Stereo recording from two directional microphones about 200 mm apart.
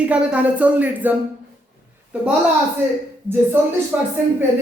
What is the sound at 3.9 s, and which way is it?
Speech, 5° right (ahead or behind).